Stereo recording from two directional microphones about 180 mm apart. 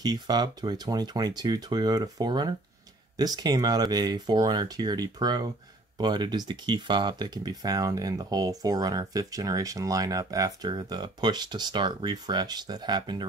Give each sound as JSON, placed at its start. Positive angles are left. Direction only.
{"t": 0.0, "sound": "speech", "side_deg": -20}